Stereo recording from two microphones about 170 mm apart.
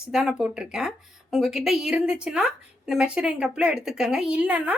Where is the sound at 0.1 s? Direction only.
5° right (ahead or behind).